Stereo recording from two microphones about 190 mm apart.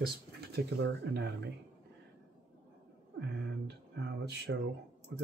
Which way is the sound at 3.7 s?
65° right (ahead or behind).